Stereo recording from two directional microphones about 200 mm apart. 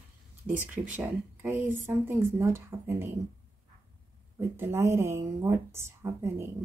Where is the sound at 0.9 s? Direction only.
10° right (ahead or behind).